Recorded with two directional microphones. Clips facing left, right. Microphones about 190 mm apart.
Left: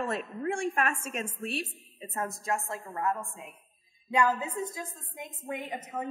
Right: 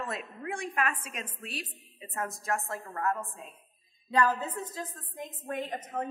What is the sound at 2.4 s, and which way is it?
A woman's voice, 15° left (ahead or behind).